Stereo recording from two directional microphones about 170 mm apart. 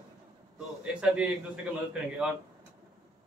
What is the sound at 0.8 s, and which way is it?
Speech, 5° right (ahead or behind).